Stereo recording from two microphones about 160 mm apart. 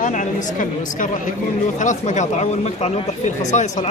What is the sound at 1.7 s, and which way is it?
Speech, 50° left (ahead or behind).